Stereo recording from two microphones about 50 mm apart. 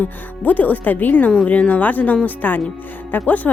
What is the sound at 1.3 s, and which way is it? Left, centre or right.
Speech, left.